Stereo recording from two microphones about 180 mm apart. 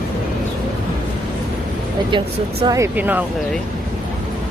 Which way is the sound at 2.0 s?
25° right (ahead or behind).